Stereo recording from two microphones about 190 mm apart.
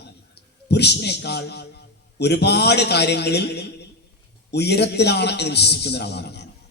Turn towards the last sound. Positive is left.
turn(degrees=60)  # may be behind; listen again after turning